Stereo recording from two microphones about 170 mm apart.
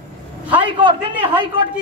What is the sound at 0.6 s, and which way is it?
Speech, 30° right (ahead or behind).